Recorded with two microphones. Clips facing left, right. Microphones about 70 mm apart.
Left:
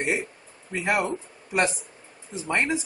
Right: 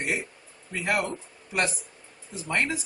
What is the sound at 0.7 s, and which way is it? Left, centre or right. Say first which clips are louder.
Speech: left 2 dB; centre.